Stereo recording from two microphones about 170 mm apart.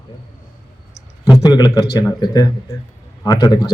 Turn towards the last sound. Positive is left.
turn(degrees=25)  # may be behind; listen again after turning